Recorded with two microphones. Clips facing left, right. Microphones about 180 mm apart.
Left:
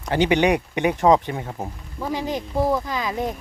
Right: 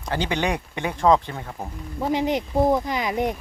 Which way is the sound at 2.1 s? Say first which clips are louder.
Right 3 dB; 20° right (ahead or behind).